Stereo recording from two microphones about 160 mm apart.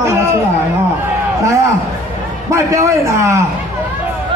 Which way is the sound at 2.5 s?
20° right (ahead or behind).